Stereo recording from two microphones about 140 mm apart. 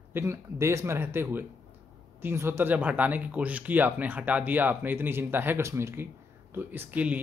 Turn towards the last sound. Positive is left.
turn(degrees=-10)  # may be behind; listen again after turning